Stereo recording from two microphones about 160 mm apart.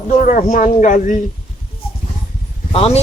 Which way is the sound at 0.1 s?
55° left (ahead or behind).